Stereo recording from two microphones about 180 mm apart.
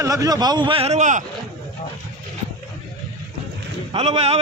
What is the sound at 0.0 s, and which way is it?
Speech, 20° right (ahead or behind).